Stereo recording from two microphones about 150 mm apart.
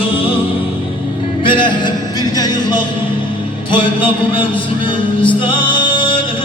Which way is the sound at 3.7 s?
35° left (ahead or behind).